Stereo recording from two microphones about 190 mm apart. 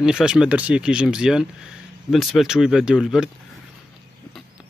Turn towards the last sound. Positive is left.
turn(degrees=-5)  # may be behind; listen again after turning